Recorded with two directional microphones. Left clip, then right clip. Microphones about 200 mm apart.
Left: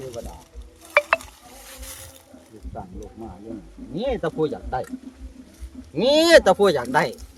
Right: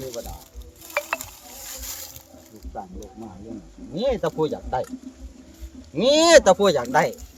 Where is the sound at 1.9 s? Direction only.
40° right (ahead or behind).